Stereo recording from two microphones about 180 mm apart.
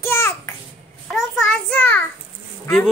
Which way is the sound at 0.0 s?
15° left (ahead or behind).